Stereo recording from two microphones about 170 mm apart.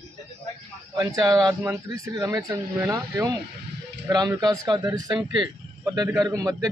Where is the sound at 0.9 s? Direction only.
20° right (ahead or behind).